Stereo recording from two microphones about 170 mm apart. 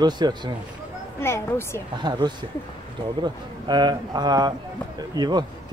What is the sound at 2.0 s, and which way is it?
Speech, 25° right (ahead or behind).